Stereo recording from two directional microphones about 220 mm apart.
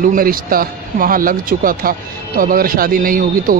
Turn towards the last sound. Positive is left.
turn(degrees=-40)  # may be behind; listen again after turning